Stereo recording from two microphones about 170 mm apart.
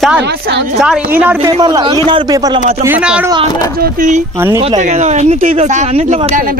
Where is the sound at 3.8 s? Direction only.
55° right (ahead or behind).